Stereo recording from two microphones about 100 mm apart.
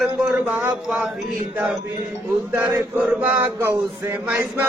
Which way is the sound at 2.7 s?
15° right (ahead or behind).